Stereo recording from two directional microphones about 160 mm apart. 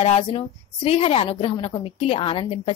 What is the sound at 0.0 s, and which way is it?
A woman's voice, 40° left (ahead or behind).